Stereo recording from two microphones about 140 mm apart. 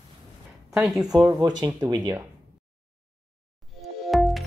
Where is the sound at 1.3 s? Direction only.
30° right (ahead or behind).